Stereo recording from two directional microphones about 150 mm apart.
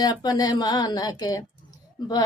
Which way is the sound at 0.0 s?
30° left (ahead or behind).